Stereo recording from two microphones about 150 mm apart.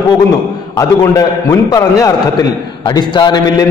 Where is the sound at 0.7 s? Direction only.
20° left (ahead or behind).